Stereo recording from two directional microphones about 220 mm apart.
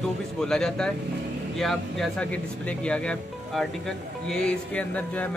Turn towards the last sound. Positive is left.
turn(degrees=5)  # may be behind; listen again after turning